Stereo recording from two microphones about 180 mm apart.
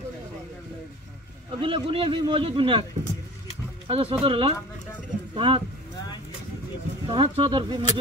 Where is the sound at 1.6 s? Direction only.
30° right (ahead or behind).